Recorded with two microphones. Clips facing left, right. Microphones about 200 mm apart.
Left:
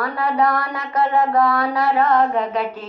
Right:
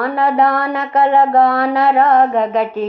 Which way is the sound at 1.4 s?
65° right (ahead or behind).